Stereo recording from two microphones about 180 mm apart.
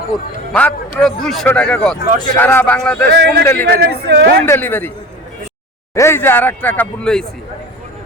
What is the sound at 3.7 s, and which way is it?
Speech, 60° right (ahead or behind).